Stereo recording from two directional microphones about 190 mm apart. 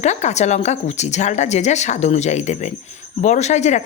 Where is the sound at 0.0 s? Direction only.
35° left (ahead or behind).